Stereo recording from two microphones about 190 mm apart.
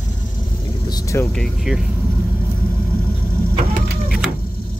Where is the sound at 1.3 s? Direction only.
Centre (ahead or behind).